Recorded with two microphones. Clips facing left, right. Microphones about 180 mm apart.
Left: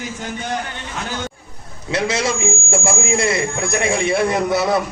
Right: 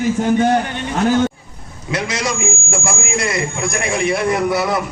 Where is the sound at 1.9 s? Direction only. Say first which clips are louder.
Left 2 dB; 30° left (ahead or behind).